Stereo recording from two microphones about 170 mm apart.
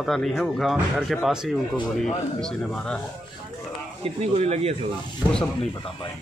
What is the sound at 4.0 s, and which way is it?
Speech, 40° right (ahead or behind).